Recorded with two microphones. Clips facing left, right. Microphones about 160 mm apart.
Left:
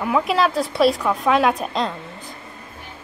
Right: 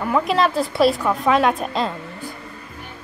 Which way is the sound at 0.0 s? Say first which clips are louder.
Even; centre (ahead or behind).